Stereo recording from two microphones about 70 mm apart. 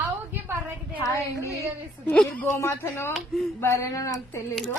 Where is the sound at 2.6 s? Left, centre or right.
Left.